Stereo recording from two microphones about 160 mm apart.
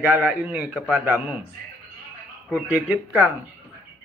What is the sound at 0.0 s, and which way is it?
A man's voice, 10° right (ahead or behind).